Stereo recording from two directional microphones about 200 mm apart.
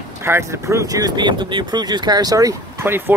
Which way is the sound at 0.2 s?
15° right (ahead or behind).